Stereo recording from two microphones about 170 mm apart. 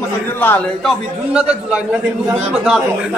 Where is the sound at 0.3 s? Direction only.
10° left (ahead or behind).